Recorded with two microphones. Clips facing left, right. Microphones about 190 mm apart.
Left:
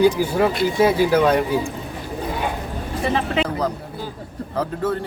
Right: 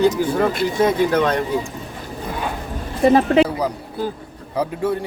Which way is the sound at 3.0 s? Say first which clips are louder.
Right 8 dB; 45° right (ahead or behind).